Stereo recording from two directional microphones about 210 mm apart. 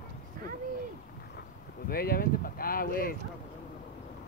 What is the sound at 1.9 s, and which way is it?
Speech, 45° left (ahead or behind).